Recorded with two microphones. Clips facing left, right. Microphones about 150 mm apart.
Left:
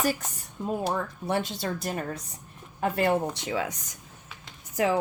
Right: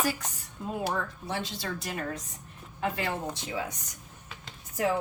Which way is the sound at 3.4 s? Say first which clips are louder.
Left 4 dB; 85° left.